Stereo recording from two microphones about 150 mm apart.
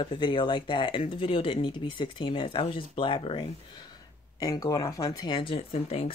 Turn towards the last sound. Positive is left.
turn(degrees=40)  # may be behind; listen again after turning